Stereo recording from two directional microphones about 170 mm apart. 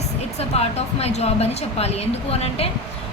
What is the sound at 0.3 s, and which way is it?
A woman's voice, 35° left (ahead or behind).